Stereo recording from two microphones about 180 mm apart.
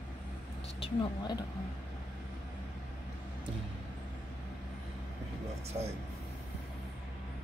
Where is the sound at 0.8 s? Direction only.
25° left (ahead or behind).